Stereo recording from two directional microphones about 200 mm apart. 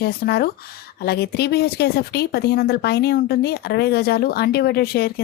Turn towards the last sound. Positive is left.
turn(degrees=50)  # may be behind; listen again after turning